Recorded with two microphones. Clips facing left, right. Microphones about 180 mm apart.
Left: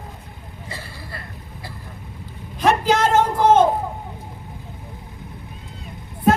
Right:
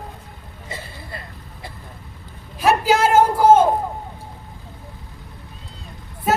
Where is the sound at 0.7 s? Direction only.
20° right (ahead or behind).